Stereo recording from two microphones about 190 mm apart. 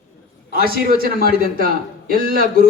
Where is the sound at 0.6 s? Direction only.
50° right (ahead or behind).